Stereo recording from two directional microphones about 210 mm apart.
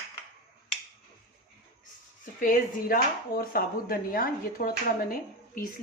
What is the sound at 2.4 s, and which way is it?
Speech, 40° left (ahead or behind).